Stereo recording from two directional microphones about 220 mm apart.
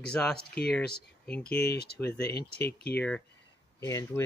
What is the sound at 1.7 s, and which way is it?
Speech, 45° left (ahead or behind).